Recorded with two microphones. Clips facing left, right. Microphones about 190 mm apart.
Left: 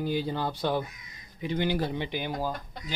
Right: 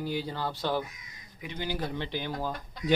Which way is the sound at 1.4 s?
30° left (ahead or behind).